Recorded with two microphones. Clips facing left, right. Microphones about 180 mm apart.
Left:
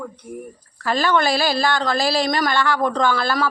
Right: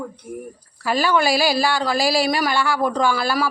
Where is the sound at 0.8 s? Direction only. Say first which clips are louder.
Even; 10° right (ahead or behind).